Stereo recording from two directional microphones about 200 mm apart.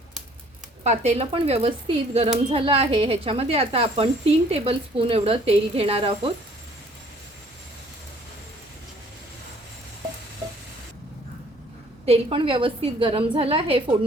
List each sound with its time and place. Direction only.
0.9 s speech: 35° right (ahead or behind)
12.0 s speech: 30° right (ahead or behind)